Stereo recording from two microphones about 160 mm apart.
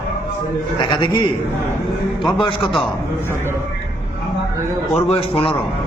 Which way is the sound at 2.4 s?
30° left (ahead or behind).